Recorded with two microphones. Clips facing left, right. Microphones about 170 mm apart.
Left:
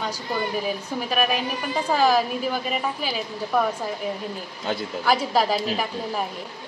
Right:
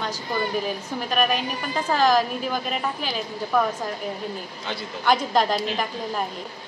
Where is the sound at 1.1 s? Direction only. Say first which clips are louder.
Right 1 dB; 5° left (ahead or behind).